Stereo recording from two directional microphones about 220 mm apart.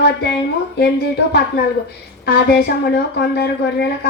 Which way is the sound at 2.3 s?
50° left (ahead or behind).